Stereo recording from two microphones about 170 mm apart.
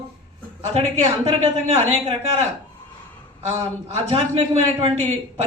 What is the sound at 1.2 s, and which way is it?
Speech, 35° right (ahead or behind).